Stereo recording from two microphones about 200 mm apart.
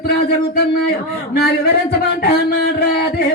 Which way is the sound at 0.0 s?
55° left (ahead or behind).